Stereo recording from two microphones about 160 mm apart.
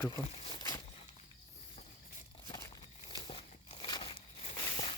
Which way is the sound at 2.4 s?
20° left (ahead or behind).